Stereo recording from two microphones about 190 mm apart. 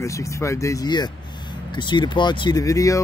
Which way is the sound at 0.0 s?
15° left (ahead or behind).